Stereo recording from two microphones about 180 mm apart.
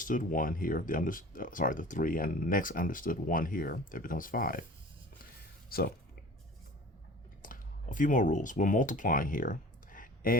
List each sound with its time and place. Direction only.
0.0 s speech: 50° left (ahead or behind)
5.6 s speech: 55° left (ahead or behind)
7.4 s speech: 50° left (ahead or behind)